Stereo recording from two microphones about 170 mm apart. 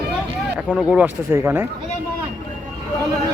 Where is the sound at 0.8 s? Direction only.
10° right (ahead or behind).